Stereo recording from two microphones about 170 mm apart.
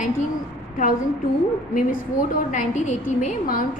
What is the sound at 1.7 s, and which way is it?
A woman's voice, 50° left (ahead or behind).